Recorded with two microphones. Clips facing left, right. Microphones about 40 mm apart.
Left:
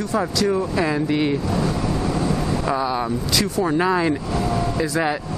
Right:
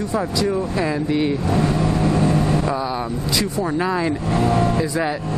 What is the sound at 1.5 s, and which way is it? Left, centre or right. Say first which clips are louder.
Vehicle: right 3 dB; right.